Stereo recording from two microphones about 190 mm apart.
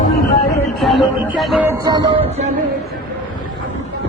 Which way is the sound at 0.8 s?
Centre (ahead or behind).